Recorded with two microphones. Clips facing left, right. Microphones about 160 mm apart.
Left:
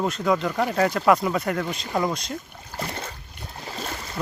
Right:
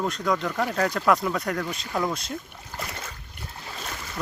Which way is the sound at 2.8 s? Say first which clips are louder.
Left 4 dB; 30° left (ahead or behind).